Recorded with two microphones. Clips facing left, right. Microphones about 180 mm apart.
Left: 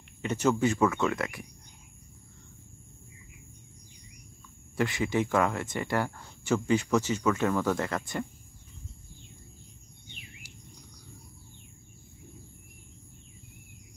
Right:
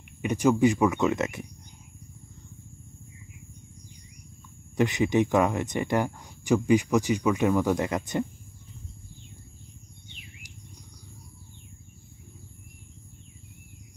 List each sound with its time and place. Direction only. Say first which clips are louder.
0.2 s speech: right 4 dB; 15° right (ahead or behind)
4.7 s speech: right 5 dB; 20° right (ahead or behind)